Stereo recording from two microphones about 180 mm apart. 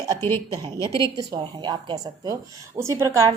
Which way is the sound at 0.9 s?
25° right (ahead or behind).